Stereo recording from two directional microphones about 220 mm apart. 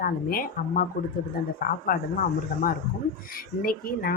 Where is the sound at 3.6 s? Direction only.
40° left (ahead or behind).